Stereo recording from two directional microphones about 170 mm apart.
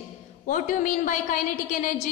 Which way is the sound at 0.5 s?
50° left (ahead or behind).